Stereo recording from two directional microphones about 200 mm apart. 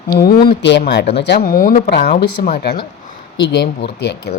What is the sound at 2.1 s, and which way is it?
Speech, 35° left (ahead or behind).